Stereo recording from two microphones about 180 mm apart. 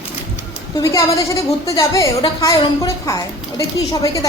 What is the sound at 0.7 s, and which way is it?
A woman's voice, 15° left (ahead or behind).